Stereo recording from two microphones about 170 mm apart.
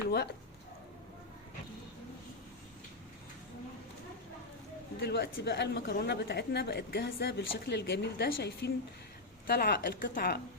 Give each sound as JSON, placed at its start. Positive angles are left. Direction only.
{"t": 4.9, "sound": "a woman's voice", "side_deg": 75}